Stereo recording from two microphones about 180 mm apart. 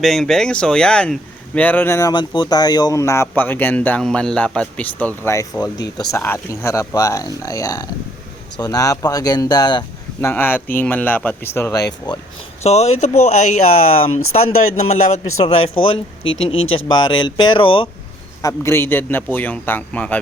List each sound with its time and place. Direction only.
0.0 s speech: centre (ahead or behind); by 9.8 s 25° left (ahead or behind)
10.2 s speech: 15° left (ahead or behind)
12.6 s a man's voice: 35° left (ahead or behind)
14.3 s a man's voice: 40° left (ahead or behind)
15.9 s speech: 90° left
16.9 s speech: 25° left (ahead or behind)
18.4 s speech: 15° left (ahead or behind)